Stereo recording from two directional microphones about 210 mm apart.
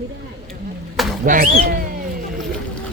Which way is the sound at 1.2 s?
40° right (ahead or behind).